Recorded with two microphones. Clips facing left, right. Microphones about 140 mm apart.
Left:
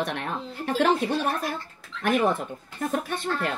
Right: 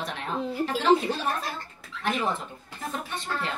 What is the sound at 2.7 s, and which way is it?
Speech, 55° left (ahead or behind).